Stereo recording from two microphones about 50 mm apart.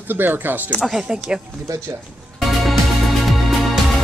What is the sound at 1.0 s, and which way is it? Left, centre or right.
Speech, centre.